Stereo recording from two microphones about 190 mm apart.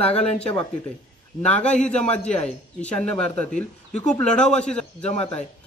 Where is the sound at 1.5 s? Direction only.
5° left (ahead or behind).